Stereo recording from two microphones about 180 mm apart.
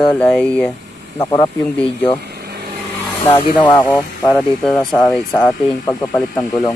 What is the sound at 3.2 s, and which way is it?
Speech, 30° left (ahead or behind).